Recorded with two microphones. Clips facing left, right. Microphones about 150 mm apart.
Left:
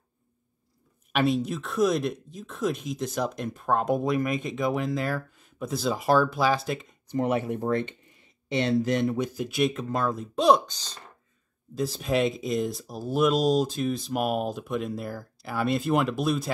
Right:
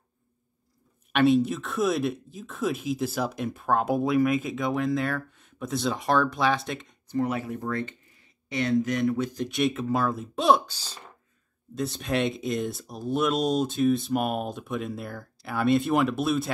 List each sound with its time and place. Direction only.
1.1 s speech: centre (ahead or behind)
7.1 s speech: 20° left (ahead or behind)
9.2 s speech: 10° left (ahead or behind)